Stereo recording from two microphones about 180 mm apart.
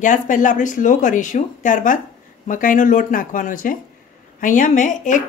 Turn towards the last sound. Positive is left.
turn(degrees=45)  # may be behind; listen again after turning